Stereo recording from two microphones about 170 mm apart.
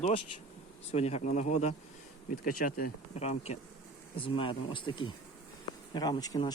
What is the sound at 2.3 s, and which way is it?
Speech, 55° left (ahead or behind).